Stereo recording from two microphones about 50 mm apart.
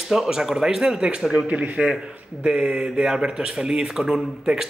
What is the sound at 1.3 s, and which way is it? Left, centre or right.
Speech, right.